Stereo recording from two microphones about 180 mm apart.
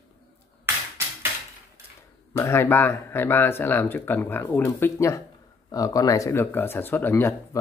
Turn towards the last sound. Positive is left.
turn(degrees=15)  # may be behind; listen again after turning